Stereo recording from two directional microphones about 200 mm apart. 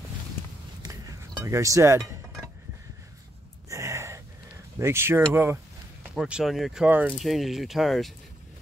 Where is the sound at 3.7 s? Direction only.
15° right (ahead or behind).